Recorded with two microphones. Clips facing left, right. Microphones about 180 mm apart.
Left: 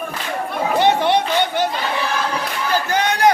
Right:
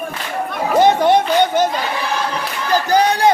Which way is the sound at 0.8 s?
45° right (ahead or behind).